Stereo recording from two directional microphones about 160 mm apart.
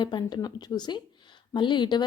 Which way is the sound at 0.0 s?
30° left (ahead or behind).